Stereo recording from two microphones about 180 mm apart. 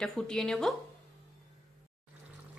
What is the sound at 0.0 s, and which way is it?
Speech, 5° left (ahead or behind).